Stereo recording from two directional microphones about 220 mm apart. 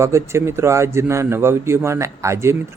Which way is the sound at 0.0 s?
10° right (ahead or behind).